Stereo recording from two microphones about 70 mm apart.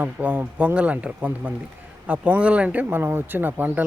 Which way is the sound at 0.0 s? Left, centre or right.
Right.